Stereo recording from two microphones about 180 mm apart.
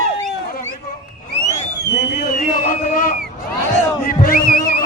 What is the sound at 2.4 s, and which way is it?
Speech, 50° left (ahead or behind).